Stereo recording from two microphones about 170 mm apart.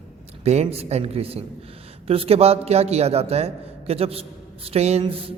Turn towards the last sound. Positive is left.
turn(degrees=-35)  # may be behind; listen again after turning